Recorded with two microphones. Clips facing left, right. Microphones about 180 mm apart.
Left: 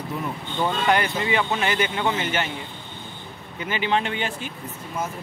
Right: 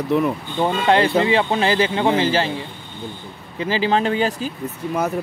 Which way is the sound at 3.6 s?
30° right (ahead or behind).